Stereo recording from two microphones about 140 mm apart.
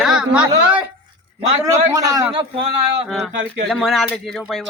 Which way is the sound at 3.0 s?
Centre (ahead or behind).